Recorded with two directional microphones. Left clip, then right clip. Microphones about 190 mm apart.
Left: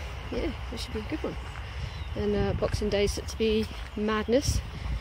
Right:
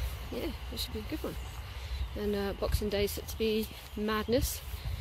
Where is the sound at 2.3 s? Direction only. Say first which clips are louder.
Left 5 dB; 5° right (ahead or behind).